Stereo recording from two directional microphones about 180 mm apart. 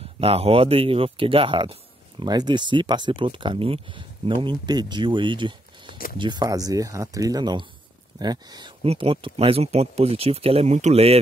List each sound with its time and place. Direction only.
0.2 s speech: 30° right (ahead or behind)
8.8 s speech: 30° right (ahead or behind)